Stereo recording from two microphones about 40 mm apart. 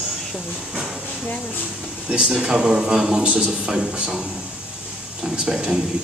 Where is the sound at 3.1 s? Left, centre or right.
Right.